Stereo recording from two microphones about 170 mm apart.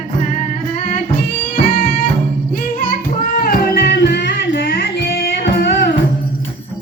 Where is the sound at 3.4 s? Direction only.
55° left (ahead or behind).